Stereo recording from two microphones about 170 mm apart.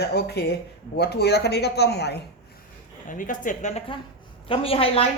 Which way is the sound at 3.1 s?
50° left (ahead or behind).